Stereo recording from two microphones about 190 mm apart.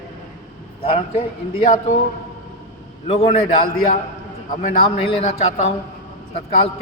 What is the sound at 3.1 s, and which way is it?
Speech, 30° left (ahead or behind).